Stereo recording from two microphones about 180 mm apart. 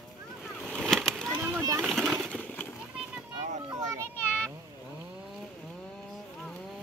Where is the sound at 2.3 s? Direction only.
5° left (ahead or behind).